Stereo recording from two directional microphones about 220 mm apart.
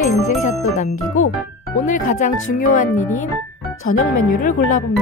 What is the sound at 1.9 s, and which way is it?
Speech, 35° left (ahead or behind).